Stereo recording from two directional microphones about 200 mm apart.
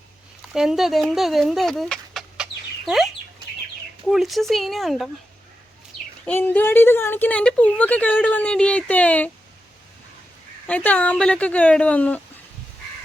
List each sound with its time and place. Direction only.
0.5 s speech: centre (ahead or behind)
4.1 s speech: centre (ahead or behind)
6.2 s a woman's voice: 10° left (ahead or behind)
10.7 s a woman's voice: 10° left (ahead or behind)